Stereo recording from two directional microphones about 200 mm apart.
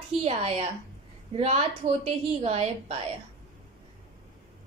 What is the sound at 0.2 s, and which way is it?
A woman's voice, 30° right (ahead or behind).